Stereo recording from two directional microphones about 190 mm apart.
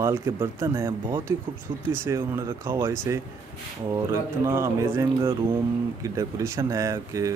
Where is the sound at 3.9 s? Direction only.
15° right (ahead or behind).